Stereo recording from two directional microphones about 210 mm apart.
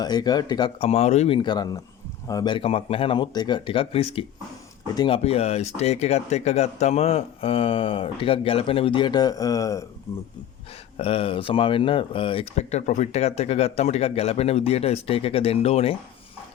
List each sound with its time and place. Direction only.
0.0 s speech: 20° left (ahead or behind)
10.9 s speech: 25° left (ahead or behind)